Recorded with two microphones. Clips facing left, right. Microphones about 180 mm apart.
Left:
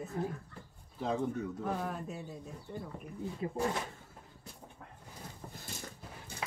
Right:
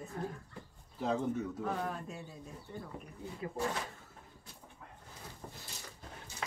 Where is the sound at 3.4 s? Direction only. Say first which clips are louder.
Left 3 dB; 30° left (ahead or behind).